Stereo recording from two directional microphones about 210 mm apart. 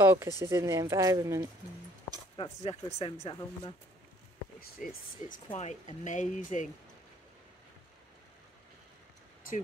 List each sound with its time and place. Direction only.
0.0 s speech: 10° right (ahead or behind)
2.3 s speech: 25° left (ahead or behind)
4.8 s speech: 40° left (ahead or behind)